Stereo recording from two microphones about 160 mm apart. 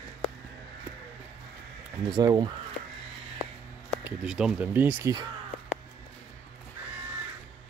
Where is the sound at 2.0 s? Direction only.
25° right (ahead or behind).